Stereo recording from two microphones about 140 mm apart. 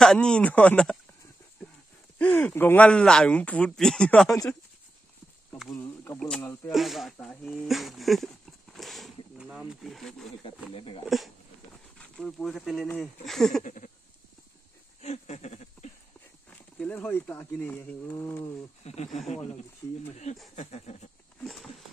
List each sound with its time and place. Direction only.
0.0 s speech: 5° left (ahead or behind)
2.1 s speech: 10° left (ahead or behind)
6.1 s speech: 5° left (ahead or behind)
8.7 s wild animals: centre (ahead or behind)
10.7 s speech: 40° left (ahead or behind)
11.1 s speech: centre (ahead or behind)
13.7 s a sound: 65° left (ahead or behind)
15.0 s a sound: 50° left (ahead or behind)
16.4 s speech: 10° left (ahead or behind)
18.9 s a sound: 50° left (ahead or behind)
20.5 s a sound: 50° left (ahead or behind)
21.4 s speech: centre (ahead or behind)